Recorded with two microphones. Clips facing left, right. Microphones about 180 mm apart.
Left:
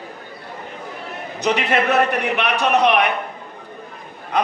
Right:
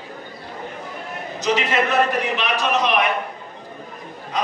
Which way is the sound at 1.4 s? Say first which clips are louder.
Left 1 dB; 60° left (ahead or behind).